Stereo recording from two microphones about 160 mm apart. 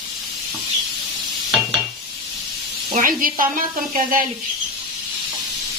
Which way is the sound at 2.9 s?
55° right (ahead or behind).